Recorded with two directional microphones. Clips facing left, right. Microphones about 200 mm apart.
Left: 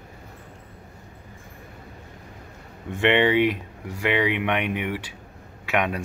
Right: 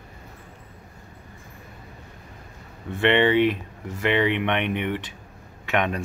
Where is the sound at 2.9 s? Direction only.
15° left (ahead or behind).